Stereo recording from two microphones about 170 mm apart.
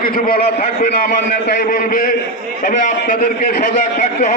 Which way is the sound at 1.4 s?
60° left (ahead or behind).